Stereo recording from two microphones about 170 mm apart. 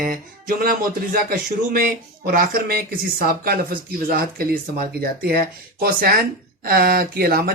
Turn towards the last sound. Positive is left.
turn(degrees=-60)  # may be behind; listen again after turning